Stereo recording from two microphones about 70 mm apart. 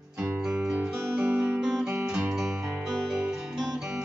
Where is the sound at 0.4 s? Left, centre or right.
Centre.